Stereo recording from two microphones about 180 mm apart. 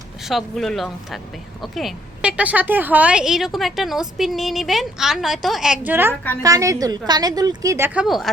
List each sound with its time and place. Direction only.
0.3 s a woman's voice: centre (ahead or behind)